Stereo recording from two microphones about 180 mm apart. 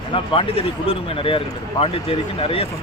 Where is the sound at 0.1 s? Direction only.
30° left (ahead or behind).